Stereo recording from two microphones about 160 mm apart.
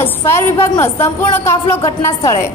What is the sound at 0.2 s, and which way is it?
A woman's voice, 15° left (ahead or behind).